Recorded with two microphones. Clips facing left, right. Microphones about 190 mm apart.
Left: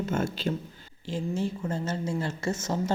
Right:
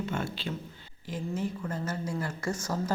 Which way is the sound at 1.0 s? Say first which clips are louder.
Left 3 dB; 25° left (ahead or behind).